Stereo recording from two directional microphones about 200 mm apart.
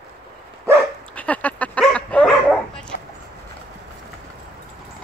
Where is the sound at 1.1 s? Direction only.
5° left (ahead or behind).